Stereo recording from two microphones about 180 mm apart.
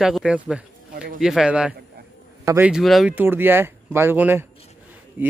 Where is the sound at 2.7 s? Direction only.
Centre (ahead or behind).